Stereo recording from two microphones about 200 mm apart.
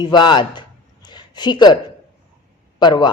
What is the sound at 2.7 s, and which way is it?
Speech, 20° left (ahead or behind).